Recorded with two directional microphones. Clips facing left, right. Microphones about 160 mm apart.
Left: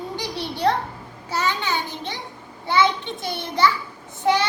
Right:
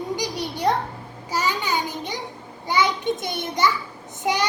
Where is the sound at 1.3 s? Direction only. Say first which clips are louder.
Even; 10° right (ahead or behind).